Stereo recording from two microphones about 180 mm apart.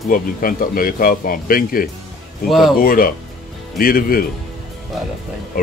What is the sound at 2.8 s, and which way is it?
Speech, 55° left (ahead or behind).